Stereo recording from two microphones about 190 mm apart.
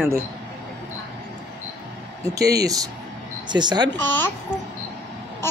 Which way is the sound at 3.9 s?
10° left (ahead or behind).